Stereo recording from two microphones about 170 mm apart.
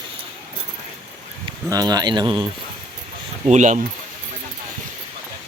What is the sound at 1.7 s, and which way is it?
Speech, 20° right (ahead or behind).